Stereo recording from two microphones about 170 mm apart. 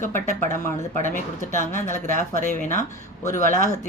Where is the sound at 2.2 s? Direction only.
10° left (ahead or behind).